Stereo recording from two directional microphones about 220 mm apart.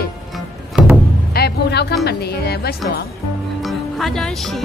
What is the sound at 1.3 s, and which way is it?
A woman's voice, 45° left (ahead or behind).